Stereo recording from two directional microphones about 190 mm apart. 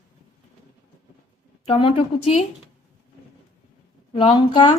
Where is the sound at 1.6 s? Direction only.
30° left (ahead or behind).